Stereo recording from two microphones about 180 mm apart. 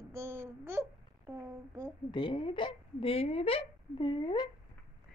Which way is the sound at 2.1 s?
25° left (ahead or behind).